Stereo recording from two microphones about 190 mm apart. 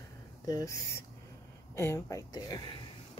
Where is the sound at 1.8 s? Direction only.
15° left (ahead or behind).